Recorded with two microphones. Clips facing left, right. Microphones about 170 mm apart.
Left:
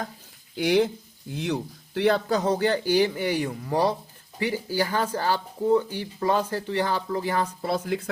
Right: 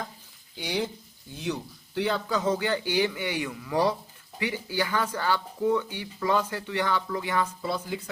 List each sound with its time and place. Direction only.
0.6 s speech: 85° left
1.3 s speech: 75° left (ahead or behind); by 7.5 s 35° left (ahead or behind)
7.6 s speech: 60° left (ahead or behind)